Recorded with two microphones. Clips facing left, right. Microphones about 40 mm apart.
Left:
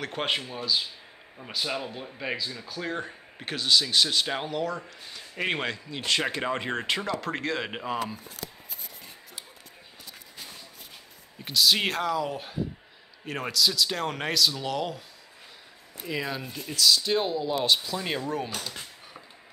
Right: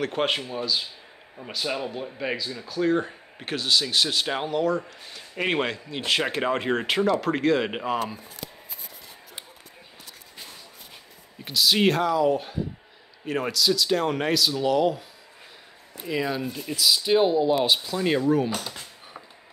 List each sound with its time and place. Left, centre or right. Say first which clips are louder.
0.0 s speech: right 4 dB; centre
11.4 s speech: right 3 dB; centre
16.1 s speech: right 5 dB; centre